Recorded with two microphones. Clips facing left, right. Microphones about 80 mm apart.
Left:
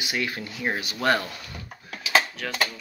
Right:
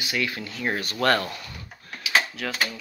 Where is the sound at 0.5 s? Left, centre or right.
Centre.